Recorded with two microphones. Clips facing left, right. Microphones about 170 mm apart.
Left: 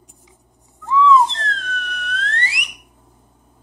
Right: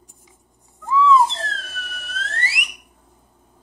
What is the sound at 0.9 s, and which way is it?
Theremin, 5° right (ahead or behind).